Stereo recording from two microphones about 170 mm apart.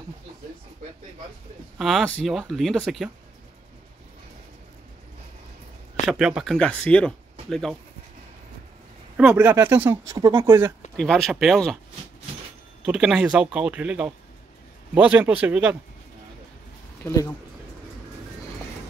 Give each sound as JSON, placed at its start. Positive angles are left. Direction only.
{"t": 1.8, "sound": "speech", "side_deg": 0}
{"t": 6.0, "sound": "speech", "side_deg": -5}
{"t": 9.1, "sound": "speech", "side_deg": -5}
{"t": 10.1, "sound": "speech", "side_deg": -25}
{"t": 11.0, "sound": "speech", "side_deg": 0}
{"t": 12.8, "sound": "speech", "side_deg": -5}
{"t": 17.0, "sound": "speech", "side_deg": 20}